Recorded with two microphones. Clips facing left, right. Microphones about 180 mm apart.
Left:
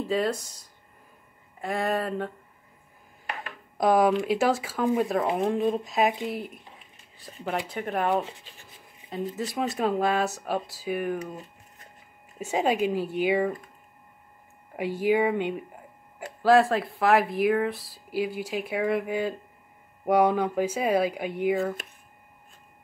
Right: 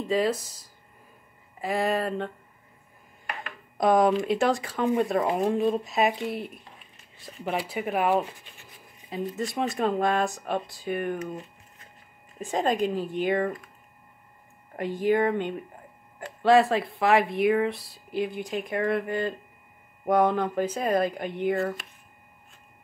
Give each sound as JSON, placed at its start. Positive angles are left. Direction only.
{"t": 0.0, "sound": "speech", "side_deg": 0}
{"t": 3.7, "sound": "speech", "side_deg": 5}
{"t": 12.4, "sound": "speech", "side_deg": 5}
{"t": 14.8, "sound": "speech", "side_deg": 10}